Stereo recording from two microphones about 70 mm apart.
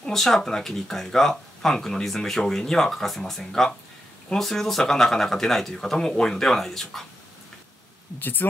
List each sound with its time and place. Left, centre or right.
0.0 s speech: centre
8.2 s speech: left